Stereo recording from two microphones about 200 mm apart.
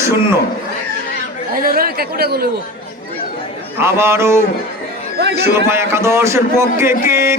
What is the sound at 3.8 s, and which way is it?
A man's voice, 10° right (ahead or behind).